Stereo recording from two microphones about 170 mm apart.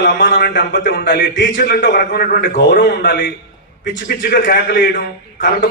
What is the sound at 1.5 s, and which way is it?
A man's voice, 55° left (ahead or behind).